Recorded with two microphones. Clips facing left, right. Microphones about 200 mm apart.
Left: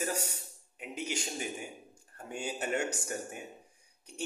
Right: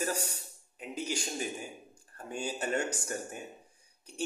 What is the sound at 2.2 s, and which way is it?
Speech, 20° left (ahead or behind).